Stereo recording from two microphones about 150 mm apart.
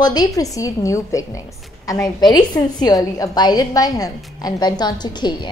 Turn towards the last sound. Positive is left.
turn(degrees=30)  # may be behind; listen again after turning